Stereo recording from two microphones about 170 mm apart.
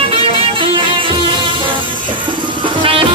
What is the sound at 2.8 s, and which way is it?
Music, 30° right (ahead or behind).